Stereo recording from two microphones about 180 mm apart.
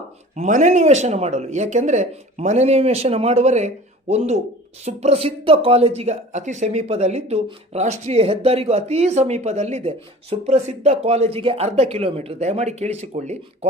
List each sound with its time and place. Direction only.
0.3 s speech: 45° right (ahead or behind)
4.9 s speech: 35° right (ahead or behind)